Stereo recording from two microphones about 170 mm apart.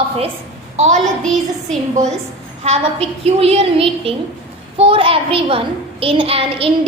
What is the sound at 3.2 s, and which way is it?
A child's voice, 35° right (ahead or behind).